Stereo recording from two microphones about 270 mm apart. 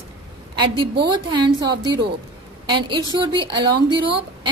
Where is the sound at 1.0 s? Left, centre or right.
Centre.